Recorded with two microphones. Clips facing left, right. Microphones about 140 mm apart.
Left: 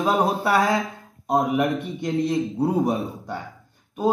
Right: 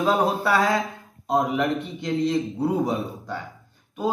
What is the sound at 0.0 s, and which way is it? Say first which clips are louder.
A man's voice: even; 15° left (ahead or behind).